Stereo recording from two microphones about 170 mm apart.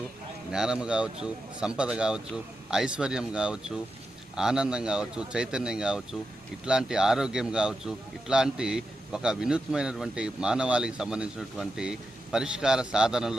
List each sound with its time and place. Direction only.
0.5 s a man's voice: 5° right (ahead or behind)